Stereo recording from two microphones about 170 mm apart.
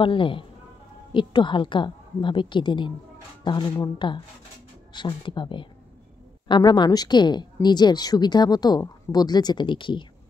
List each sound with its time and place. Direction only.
0.0 s a woman's voice: 30° left (ahead or behind)